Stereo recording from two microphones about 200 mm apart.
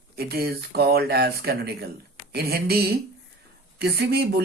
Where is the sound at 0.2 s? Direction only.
50° right (ahead or behind).